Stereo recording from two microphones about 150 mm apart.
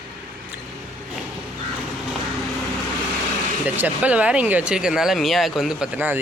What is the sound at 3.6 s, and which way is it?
Speech, 10° right (ahead or behind).